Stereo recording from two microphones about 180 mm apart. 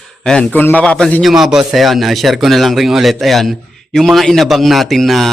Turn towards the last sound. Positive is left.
turn(degrees=0)  # may be behind; listen again after turning